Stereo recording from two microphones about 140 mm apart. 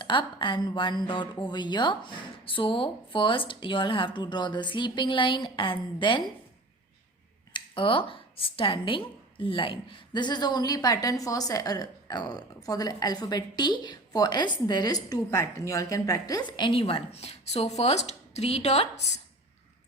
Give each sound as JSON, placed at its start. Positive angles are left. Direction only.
{"t": 0.0, "sound": "a woman's voice", "side_deg": 35}
{"t": 7.5, "sound": "a woman's voice", "side_deg": 40}